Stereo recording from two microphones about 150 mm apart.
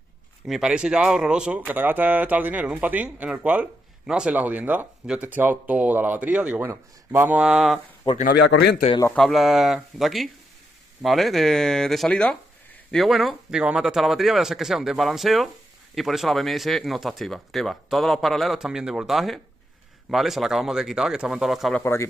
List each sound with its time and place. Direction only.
0.5 s speech: 5° right (ahead or behind)
8.2 s a man's voice: 80° left
9.1 s speech: centre (ahead or behind)